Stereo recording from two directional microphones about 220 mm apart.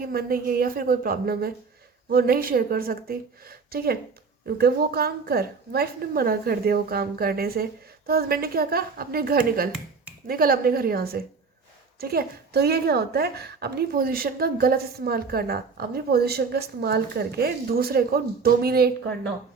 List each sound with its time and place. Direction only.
0.0 s a woman's voice: 45° right (ahead or behind)